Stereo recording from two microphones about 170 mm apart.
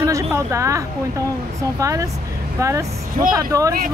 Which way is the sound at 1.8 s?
20° right (ahead or behind).